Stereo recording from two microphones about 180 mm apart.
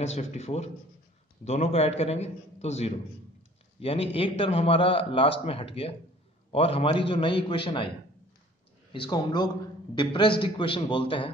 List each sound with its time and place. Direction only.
0.0 s a man's voice: 35° left (ahead or behind)
8.9 s a man's voice: 25° left (ahead or behind)